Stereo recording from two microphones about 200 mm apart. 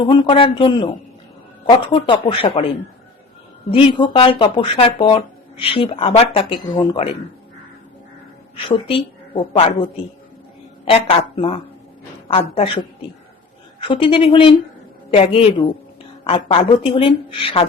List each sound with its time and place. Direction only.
0.1 s speech: 25° left (ahead or behind)
3.7 s speech: 25° left (ahead or behind)
8.5 s speech: 25° left (ahead or behind)